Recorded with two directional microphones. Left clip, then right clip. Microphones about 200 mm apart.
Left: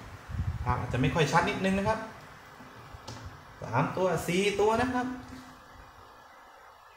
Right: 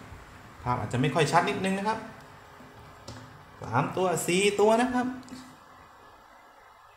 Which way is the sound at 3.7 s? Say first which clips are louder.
Right 1 dB; 50° right (ahead or behind).